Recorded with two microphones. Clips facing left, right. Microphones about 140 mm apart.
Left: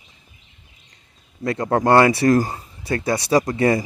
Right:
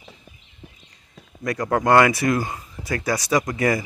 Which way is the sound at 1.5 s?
30° left (ahead or behind).